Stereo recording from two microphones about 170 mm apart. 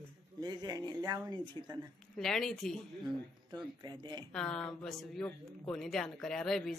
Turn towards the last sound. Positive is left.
turn(degrees=5)  # may be behind; listen again after turning